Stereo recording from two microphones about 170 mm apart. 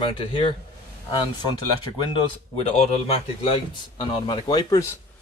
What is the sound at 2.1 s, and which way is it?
Speech, 35° left (ahead or behind).